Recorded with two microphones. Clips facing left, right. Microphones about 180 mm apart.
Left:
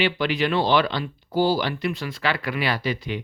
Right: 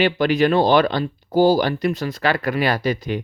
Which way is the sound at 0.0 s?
45° right (ahead or behind).